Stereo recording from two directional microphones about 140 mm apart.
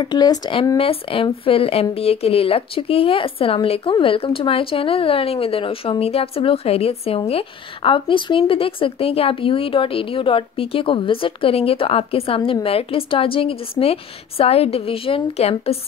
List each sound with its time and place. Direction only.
0.0 s speech: 30° left (ahead or behind)
0.7 s a woman's voice: 40° left (ahead or behind)